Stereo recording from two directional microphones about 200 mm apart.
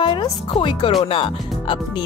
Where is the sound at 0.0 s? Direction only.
25° left (ahead or behind).